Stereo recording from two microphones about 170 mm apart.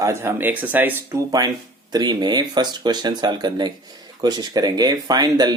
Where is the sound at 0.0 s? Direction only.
15° right (ahead or behind).